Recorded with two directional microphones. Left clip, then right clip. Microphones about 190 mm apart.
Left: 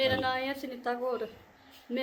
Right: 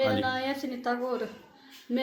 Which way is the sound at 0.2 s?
10° left (ahead or behind).